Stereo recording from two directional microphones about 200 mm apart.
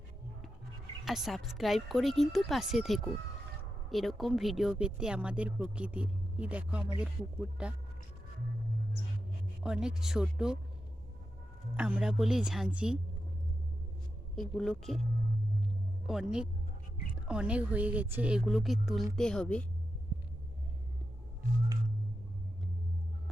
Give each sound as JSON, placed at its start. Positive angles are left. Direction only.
{"t": 1.0, "sound": "speech", "side_deg": 0}
{"t": 9.6, "sound": "speech", "side_deg": -5}
{"t": 11.8, "sound": "speech", "side_deg": -5}
{"t": 14.3, "sound": "speech", "side_deg": 0}
{"t": 16.0, "sound": "speech", "side_deg": -5}